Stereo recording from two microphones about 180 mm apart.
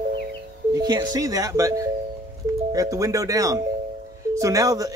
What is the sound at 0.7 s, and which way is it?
Speech, 20° right (ahead or behind).